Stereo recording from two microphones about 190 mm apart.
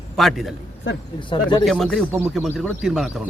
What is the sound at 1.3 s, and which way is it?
Speech, 25° left (ahead or behind).